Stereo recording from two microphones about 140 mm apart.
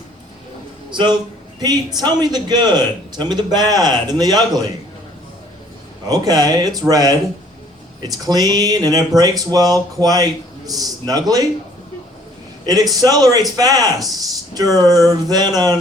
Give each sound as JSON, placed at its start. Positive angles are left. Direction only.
{"t": 0.9, "sound": "a man's voice", "side_deg": -35}
{"t": 6.1, "sound": "a man's voice", "side_deg": -25}
{"t": 12.6, "sound": "a man's voice", "side_deg": -25}